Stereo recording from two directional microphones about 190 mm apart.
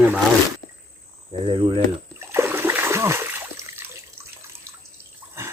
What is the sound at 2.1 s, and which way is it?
Splash, 15° right (ahead or behind).